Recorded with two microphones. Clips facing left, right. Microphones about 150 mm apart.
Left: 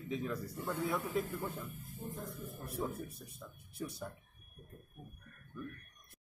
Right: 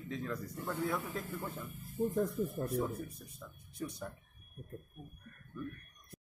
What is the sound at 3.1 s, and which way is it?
Speech, 30° left (ahead or behind).